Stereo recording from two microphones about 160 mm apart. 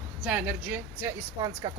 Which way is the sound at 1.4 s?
25° right (ahead or behind).